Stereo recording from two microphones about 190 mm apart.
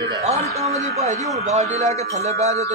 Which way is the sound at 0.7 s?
35° right (ahead or behind).